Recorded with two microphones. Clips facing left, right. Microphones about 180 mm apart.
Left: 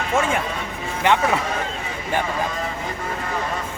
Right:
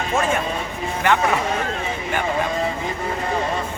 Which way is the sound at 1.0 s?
20° left (ahead or behind).